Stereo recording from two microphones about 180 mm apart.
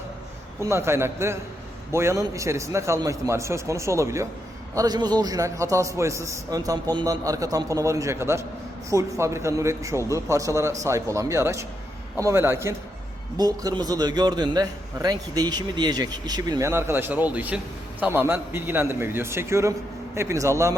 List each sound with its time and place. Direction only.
0.6 s a man's voice: 15° right (ahead or behind)